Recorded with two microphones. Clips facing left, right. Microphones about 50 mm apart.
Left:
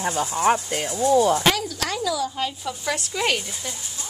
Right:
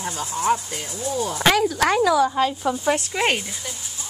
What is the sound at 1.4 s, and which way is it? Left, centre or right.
A woman's voice, right.